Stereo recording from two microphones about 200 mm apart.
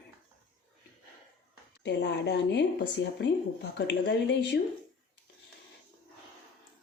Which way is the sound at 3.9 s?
55° left (ahead or behind).